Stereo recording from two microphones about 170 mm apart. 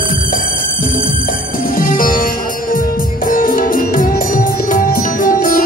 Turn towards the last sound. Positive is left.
turn(degrees=55)  # may be behind; listen again after turning